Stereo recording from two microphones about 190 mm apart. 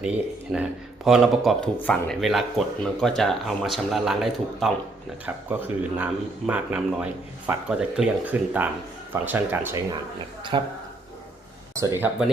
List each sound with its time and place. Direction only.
0.0 s speech: 5° right (ahead or behind)
10.5 s a man's voice: 25° right (ahead or behind)
11.8 s speech: 15° right (ahead or behind)